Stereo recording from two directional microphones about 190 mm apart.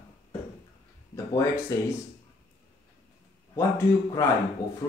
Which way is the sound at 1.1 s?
15° left (ahead or behind).